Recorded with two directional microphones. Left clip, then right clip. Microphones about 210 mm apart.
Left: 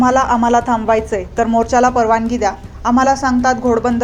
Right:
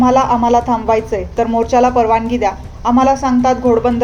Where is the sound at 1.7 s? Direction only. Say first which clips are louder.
Right 2 dB; 25° left (ahead or behind).